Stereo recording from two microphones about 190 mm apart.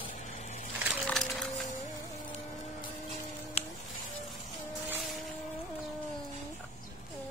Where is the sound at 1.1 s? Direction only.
Centre (ahead or behind).